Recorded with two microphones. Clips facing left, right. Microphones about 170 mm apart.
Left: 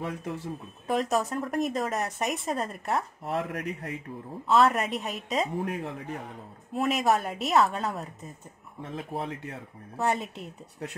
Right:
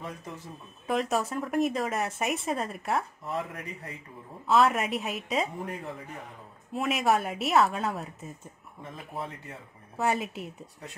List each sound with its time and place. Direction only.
0.8 s a woman's voice: centre (ahead or behind)
3.3 s speech: 70° left (ahead or behind)
4.5 s a woman's voice: centre (ahead or behind)
5.6 s speech: 85° left
6.7 s a woman's voice: centre (ahead or behind)
8.9 s speech: 85° left
9.9 s a woman's voice: 5° right (ahead or behind)